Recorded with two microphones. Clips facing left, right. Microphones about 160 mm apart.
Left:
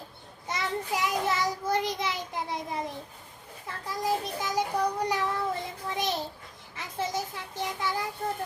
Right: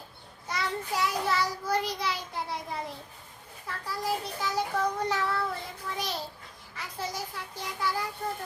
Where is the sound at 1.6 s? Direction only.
20° left (ahead or behind).